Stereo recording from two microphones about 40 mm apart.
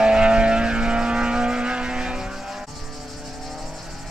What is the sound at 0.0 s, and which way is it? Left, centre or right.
Vehicle, right.